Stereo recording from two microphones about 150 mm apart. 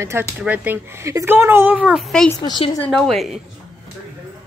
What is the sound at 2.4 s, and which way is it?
Speech, 30° left (ahead or behind).